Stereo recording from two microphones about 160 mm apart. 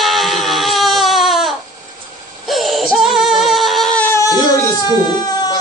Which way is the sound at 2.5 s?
Centre (ahead or behind).